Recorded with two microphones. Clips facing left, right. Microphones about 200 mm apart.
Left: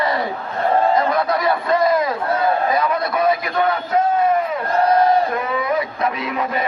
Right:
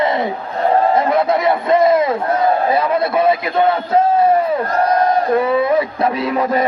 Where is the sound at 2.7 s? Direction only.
30° right (ahead or behind).